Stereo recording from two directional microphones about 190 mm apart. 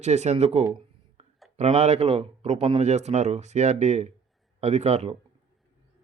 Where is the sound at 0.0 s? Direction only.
35° right (ahead or behind).